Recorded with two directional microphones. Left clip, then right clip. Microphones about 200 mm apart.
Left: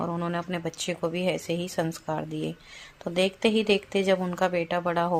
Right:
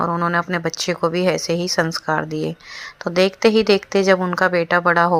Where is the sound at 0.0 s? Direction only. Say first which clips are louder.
Right 11 dB; 20° right (ahead or behind).